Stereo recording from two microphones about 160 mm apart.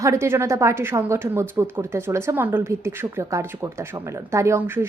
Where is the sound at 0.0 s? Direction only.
20° right (ahead or behind).